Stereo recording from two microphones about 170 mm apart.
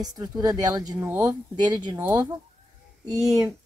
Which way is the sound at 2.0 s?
10° right (ahead or behind).